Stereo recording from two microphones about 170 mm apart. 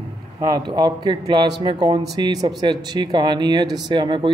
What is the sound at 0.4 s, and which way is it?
Speech, 25° right (ahead or behind).